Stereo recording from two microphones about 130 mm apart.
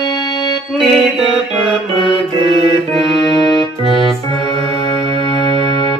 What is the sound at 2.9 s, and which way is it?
Music, centre (ahead or behind).